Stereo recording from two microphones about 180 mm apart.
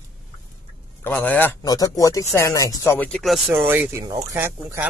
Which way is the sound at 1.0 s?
10° left (ahead or behind).